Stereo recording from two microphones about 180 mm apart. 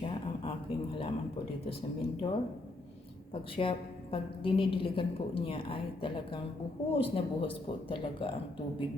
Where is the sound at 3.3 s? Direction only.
30° left (ahead or behind).